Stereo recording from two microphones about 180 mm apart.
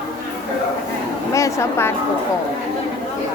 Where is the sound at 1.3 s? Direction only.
15° left (ahead or behind).